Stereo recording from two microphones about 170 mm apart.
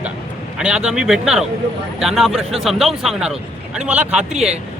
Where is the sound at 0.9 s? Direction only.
5° right (ahead or behind).